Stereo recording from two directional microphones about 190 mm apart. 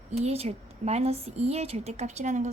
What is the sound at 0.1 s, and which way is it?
A woman's voice, 35° right (ahead or behind).